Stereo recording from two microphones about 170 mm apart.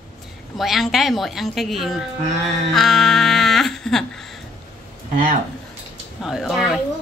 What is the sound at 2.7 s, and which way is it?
Music, centre (ahead or behind).